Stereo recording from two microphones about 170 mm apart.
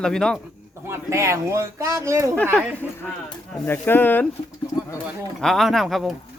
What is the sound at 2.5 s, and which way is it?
Speech, 10° left (ahead or behind).